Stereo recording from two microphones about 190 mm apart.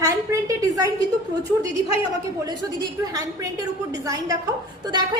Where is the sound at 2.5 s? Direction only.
20° right (ahead or behind).